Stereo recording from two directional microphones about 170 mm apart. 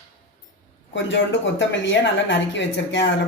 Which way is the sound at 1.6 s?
90° left.